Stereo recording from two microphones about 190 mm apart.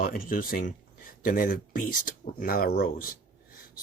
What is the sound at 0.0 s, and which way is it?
Speech, 50° left (ahead or behind).